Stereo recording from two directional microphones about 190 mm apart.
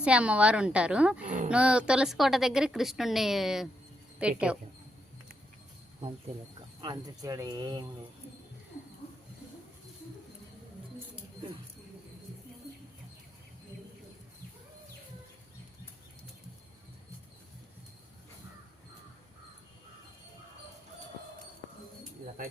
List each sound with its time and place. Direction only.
0.0 s a woman's voice: 5° right (ahead or behind)
6.8 s speech: 20° right (ahead or behind)